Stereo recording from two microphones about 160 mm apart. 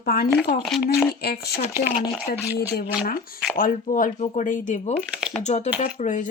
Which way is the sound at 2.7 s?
75° left (ahead or behind).